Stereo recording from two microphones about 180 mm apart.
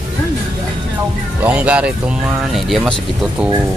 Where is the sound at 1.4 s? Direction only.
5° right (ahead or behind).